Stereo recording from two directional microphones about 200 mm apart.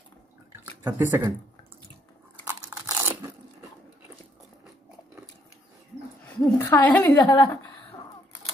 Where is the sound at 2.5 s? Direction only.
15° right (ahead or behind).